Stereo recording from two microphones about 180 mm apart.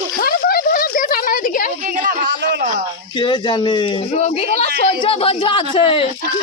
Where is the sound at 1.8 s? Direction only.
45° right (ahead or behind).